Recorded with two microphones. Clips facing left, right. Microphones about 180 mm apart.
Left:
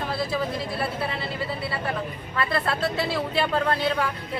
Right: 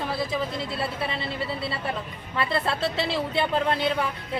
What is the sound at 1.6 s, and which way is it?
Speech, 25° right (ahead or behind).